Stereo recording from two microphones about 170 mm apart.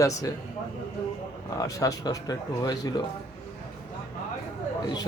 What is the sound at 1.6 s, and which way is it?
Speech, 20° left (ahead or behind).